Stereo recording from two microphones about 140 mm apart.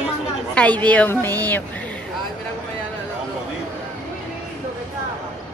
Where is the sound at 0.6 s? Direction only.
10° left (ahead or behind).